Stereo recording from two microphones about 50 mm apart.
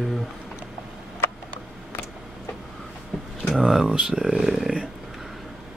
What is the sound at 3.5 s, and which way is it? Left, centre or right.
Speech, centre.